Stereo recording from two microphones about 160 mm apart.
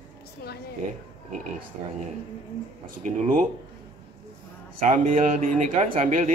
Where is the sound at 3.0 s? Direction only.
55° right (ahead or behind).